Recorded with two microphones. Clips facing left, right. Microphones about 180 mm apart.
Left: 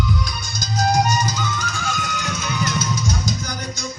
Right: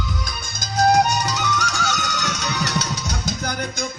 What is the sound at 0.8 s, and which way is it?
Music, 60° right (ahead or behind).